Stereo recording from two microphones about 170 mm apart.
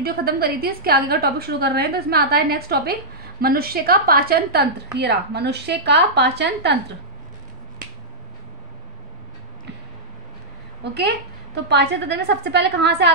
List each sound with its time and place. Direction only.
0.0 s a woman's voice: 65° right (ahead or behind); by 6.8 s 80° right
10.8 s a woman's voice: 80° right